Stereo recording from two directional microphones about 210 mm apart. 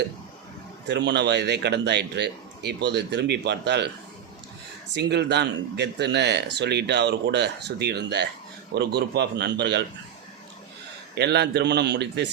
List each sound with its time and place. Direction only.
0.9 s speech: 55° right (ahead or behind)
4.9 s speech: 55° right (ahead or behind)
11.1 s speech: 55° right (ahead or behind)